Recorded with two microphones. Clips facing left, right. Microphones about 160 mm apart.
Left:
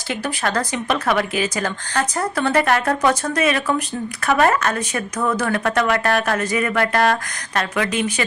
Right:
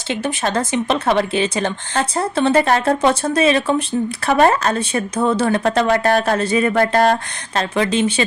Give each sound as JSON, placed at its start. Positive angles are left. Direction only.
{"t": 0.1, "sound": "a woman's voice", "side_deg": -25}